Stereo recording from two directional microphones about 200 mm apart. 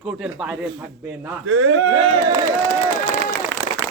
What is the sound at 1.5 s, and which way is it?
Speech, 70° right (ahead or behind).